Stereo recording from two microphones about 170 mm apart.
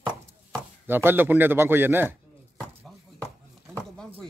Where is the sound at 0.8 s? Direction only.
10° right (ahead or behind).